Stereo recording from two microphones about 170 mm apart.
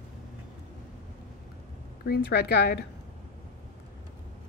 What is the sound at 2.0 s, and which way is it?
Speech, 70° left (ahead or behind).